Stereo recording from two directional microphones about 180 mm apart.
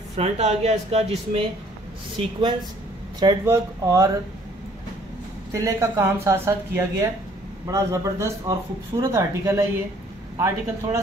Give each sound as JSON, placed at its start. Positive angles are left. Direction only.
{"t": 0.1, "sound": "speech", "side_deg": -40}
{"t": 3.2, "sound": "speech", "side_deg": -20}
{"t": 5.5, "sound": "speech", "side_deg": -15}